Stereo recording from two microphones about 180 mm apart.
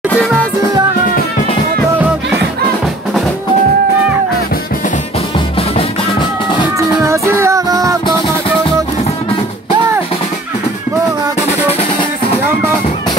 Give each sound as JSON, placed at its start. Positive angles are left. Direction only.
{"t": 7.1, "sound": "music", "side_deg": -15}